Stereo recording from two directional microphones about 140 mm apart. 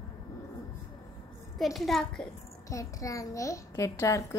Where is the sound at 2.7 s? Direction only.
25° left (ahead or behind).